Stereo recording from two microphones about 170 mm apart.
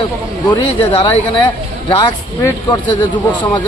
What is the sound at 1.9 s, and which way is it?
Speech, 20° left (ahead or behind).